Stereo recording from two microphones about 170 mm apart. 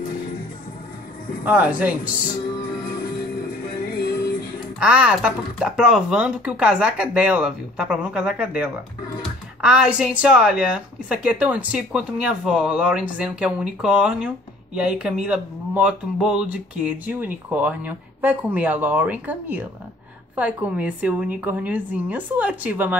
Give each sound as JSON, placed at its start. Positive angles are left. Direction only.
{"t": 1.4, "sound": "speech", "side_deg": -10}
{"t": 4.7, "sound": "speech", "side_deg": -5}